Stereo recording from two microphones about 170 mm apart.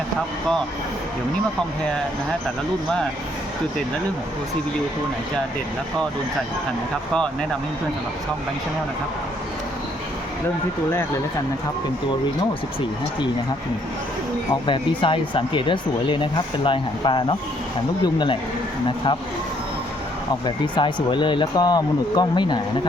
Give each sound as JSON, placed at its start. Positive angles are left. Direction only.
{"t": 14.7, "sound": "speech", "side_deg": 30}
{"t": 20.4, "sound": "speech", "side_deg": 25}